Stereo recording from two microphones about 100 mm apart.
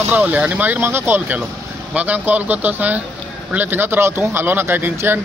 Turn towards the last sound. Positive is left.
turn(degrees=-20)  # may be behind; listen again after turning